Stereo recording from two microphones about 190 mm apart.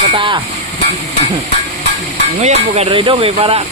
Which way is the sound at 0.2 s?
25° right (ahead or behind).